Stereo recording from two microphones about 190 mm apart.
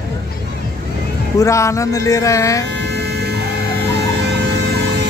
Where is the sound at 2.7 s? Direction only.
60° right (ahead or behind).